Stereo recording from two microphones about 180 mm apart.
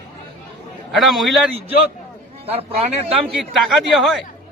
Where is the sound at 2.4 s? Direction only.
35° right (ahead or behind).